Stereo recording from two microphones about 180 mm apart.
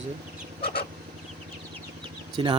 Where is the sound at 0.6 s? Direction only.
55° left (ahead or behind).